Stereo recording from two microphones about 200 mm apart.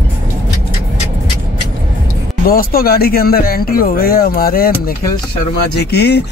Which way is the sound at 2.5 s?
45° left (ahead or behind).